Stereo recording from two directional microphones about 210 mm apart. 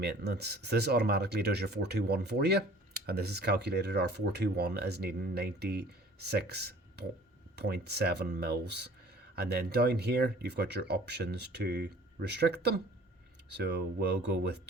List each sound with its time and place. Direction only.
0.0 s speech: 50° right (ahead or behind)